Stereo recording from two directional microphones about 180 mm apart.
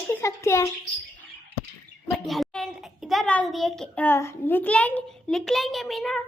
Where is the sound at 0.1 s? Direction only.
15° left (ahead or behind).